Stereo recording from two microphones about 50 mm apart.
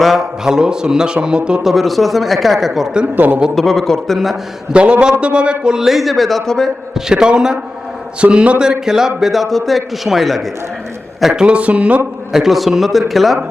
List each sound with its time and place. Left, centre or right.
0.0 s speech: centre
1.6 s a man's voice: centre
3.2 s a man's voice: right
3.5 s a man's voice: centre
4.7 s speech: right
5.9 s a man's voice: centre
6.9 s a man's voice: centre
11.4 s speech: right
12.3 s a man's voice: centre